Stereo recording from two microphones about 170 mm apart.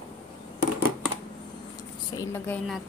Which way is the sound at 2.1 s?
15° left (ahead or behind).